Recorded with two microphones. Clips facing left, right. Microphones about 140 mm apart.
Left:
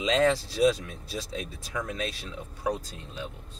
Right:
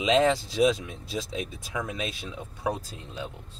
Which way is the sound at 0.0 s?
20° right (ahead or behind).